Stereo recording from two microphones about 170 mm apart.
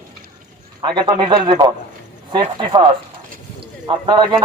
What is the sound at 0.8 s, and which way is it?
Speech, 25° right (ahead or behind).